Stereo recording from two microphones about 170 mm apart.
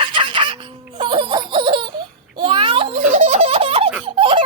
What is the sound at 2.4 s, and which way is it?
Giggle, 30° right (ahead or behind).